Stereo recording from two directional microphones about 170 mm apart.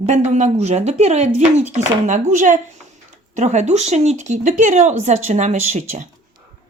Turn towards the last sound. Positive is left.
turn(degrees=-40)  # may be behind; listen again after turning